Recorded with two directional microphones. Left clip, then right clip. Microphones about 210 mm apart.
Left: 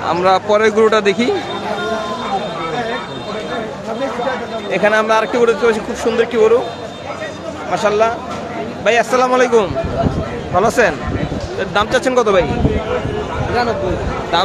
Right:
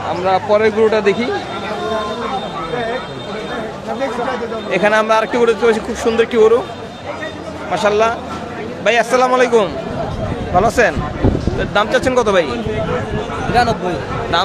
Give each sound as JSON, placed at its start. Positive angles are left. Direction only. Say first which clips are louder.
{"t": 0.1, "sound": "speech", "louder": "left 1 dB", "side_deg": 20}
{"t": 4.6, "sound": "a man's voice", "louder": "even", "side_deg": -15}
{"t": 7.7, "sound": "a man's voice", "louder": "even", "side_deg": -10}